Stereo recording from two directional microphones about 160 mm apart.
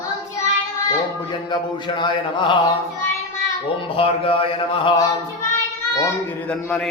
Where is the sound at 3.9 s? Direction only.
35° left (ahead or behind).